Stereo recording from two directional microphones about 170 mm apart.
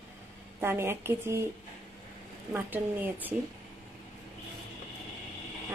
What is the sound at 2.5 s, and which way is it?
Speech, 10° right (ahead or behind).